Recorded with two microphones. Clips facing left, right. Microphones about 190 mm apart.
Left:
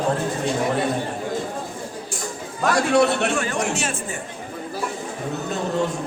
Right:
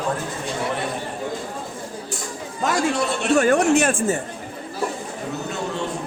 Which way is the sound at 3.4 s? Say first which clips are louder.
Right 8 dB; 55° right (ahead or behind).